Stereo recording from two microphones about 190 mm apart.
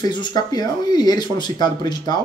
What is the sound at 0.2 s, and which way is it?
Speech, 20° left (ahead or behind).